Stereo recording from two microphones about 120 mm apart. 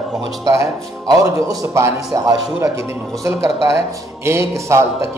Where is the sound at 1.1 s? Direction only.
25° right (ahead or behind).